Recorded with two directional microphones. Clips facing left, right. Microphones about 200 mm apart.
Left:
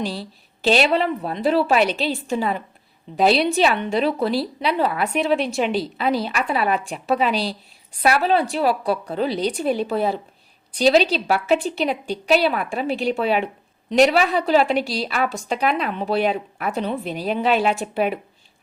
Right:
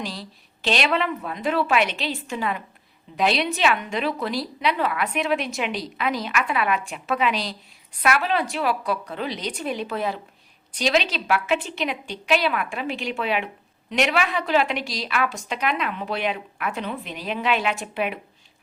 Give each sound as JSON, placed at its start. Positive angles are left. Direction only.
{"t": 0.0, "sound": "a woman's voice", "side_deg": 30}